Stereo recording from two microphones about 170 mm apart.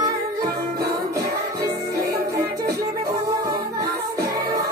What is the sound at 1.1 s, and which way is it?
Music, 20° right (ahead or behind).